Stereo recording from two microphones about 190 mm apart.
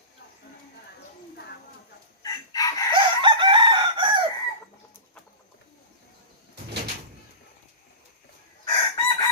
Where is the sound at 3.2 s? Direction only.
25° right (ahead or behind).